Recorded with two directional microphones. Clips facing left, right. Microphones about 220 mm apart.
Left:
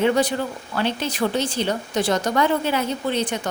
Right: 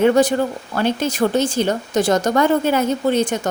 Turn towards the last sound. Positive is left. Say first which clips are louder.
# right 6 dB
turn(degrees=-45)  # may be behind; listen again after turning